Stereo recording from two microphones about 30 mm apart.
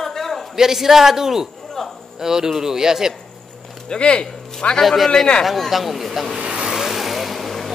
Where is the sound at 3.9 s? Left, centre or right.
Left.